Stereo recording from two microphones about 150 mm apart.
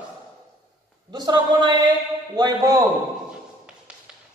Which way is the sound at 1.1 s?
30° right (ahead or behind).